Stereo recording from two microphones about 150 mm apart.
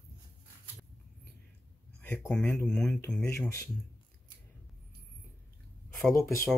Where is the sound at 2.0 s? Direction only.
5° left (ahead or behind).